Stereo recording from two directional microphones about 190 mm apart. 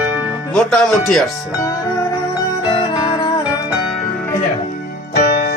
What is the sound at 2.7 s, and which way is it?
Music, 25° left (ahead or behind).